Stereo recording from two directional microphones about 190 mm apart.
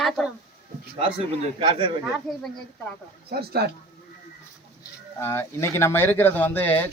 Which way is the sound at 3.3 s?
55° right (ahead or behind).